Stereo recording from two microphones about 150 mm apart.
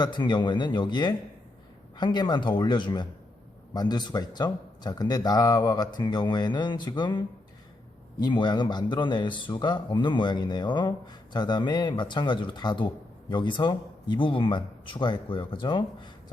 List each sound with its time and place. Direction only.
0.0 s speech: 30° left (ahead or behind)